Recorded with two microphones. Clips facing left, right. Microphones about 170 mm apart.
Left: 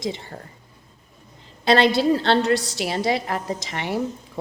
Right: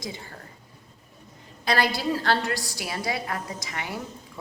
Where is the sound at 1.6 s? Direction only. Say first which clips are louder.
Left 8 dB; 25° left (ahead or behind).